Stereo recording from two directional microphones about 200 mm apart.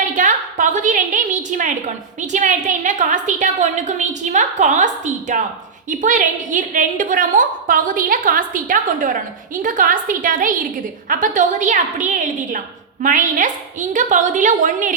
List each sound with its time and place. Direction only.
0.1 s a woman's voice: 40° right (ahead or behind)